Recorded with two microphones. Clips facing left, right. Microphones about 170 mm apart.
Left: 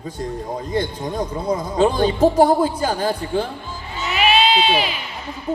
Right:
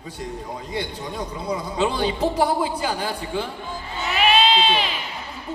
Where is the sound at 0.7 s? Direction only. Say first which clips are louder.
Left 6 dB; 45° left (ahead or behind).